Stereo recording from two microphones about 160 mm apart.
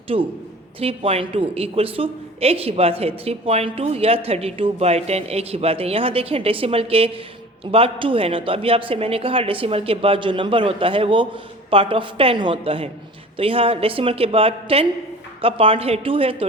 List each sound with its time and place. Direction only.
0.1 s a woman's voice: 35° right (ahead or behind)